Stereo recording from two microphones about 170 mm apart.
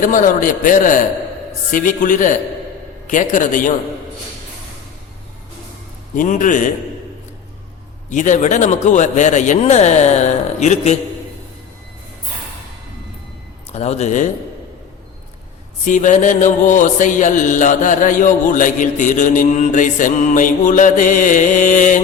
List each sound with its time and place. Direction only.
0.0 s music: 50° left (ahead or behind)
6.1 s music: 50° left (ahead or behind)
8.1 s music: 45° left (ahead or behind)
13.7 s a man's voice: 40° left (ahead or behind)
15.8 s music: 50° left (ahead or behind)